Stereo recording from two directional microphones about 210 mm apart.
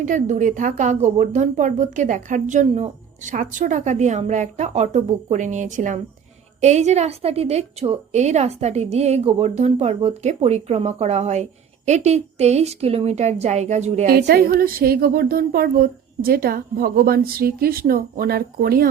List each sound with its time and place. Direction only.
0.0 s a woman's voice: 35° right (ahead or behind)
14.1 s speech: 50° right (ahead or behind)